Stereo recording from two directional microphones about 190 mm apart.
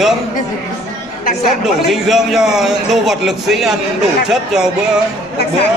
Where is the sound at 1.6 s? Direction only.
Centre (ahead or behind).